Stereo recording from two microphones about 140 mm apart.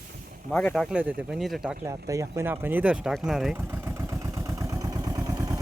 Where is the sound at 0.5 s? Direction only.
5° left (ahead or behind).